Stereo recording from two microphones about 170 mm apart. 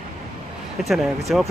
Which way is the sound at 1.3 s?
Centre (ahead or behind).